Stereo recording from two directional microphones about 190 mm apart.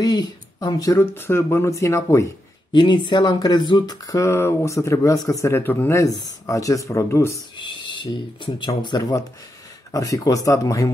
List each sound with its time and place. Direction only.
0.0 s speech: 20° left (ahead or behind)
7.9 s speech: 25° left (ahead or behind)